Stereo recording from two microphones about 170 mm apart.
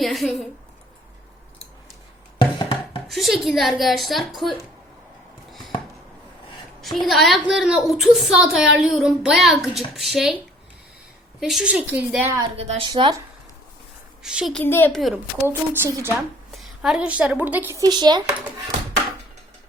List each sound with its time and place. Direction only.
0.0 s a sound: centre (ahead or behind)
2.6 s chopping: 30° left (ahead or behind)
3.1 s a woman's voice: centre (ahead or behind)
5.5 s a sound: centre (ahead or behind)
6.8 s a woman's voice: centre (ahead or behind)
12.5 s speech: 35° right (ahead or behind)
12.9 s speech: 25° right (ahead or behind)
14.2 s a woman's voice: 5° right (ahead or behind)
14.6 s a woman's voice: 10° left (ahead or behind)
14.9 s a woman's voice: centre (ahead or behind)
15.4 s a woman's voice: 15° right (ahead or behind)
16.1 s a woman's voice: centre (ahead or behind); by 18.3 s 25° right (ahead or behind)